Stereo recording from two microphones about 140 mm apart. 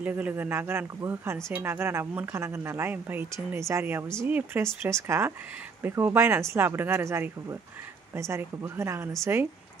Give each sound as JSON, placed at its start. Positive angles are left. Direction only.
{"t": 0.0, "sound": "speech", "side_deg": -10}